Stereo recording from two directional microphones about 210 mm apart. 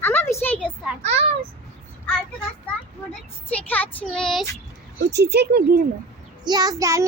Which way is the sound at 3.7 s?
10° left (ahead or behind).